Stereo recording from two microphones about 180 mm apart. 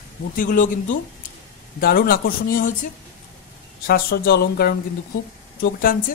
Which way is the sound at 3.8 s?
55° left (ahead or behind).